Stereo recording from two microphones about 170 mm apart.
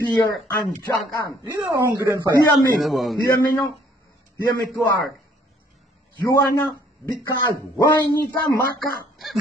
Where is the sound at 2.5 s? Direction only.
Centre (ahead or behind).